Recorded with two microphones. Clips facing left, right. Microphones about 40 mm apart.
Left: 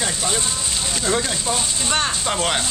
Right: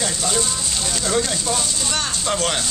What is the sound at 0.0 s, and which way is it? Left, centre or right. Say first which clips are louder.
Speech: right 1 dB; centre.